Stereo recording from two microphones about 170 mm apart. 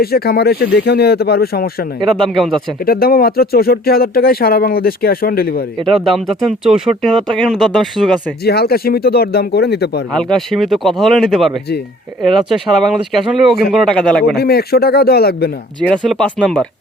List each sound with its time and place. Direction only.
0.0 s speech: 65° left (ahead or behind)
2.1 s speech: centre (ahead or behind)
2.8 s speech: 60° left (ahead or behind)
6.1 s speech: centre (ahead or behind)
8.4 s speech: 65° left (ahead or behind)
10.1 s speech: 5° left (ahead or behind)
14.3 s speech: 70° left (ahead or behind)
15.8 s speech: 5° left (ahead or behind)